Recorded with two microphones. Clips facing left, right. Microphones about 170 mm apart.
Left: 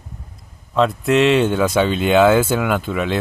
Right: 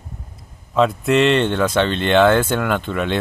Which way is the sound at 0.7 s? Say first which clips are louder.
Even; centre (ahead or behind).